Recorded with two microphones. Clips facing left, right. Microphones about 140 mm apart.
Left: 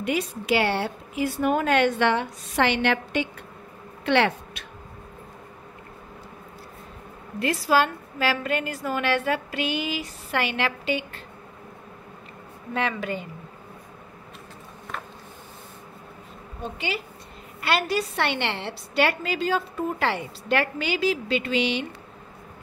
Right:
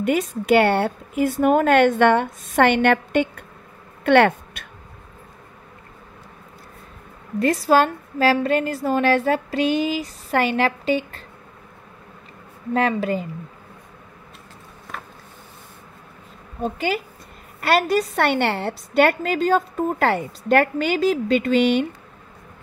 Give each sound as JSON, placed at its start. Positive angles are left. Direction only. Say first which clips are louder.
{"t": 0.0, "sound": "a woman's voice", "louder": "right 6 dB", "side_deg": -45}
{"t": 7.6, "sound": "a woman's voice", "louder": "right 3 dB", "side_deg": -40}
{"t": 12.7, "sound": "a woman's voice", "louder": "right 7 dB", "side_deg": -35}
{"t": 16.6, "sound": "a woman's voice", "louder": "right 7 dB", "side_deg": -45}